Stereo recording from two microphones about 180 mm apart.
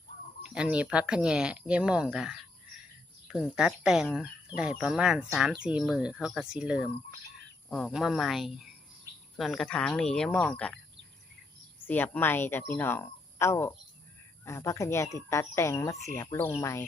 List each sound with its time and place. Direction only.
0.4 s speech: 5° right (ahead or behind)
11.9 s speech: 10° left (ahead or behind)